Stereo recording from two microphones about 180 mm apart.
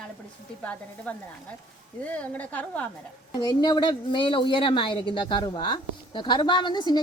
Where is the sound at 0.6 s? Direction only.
10° left (ahead or behind).